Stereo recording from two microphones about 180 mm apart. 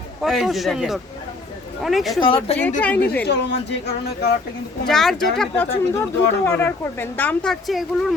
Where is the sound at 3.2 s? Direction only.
70° left (ahead or behind).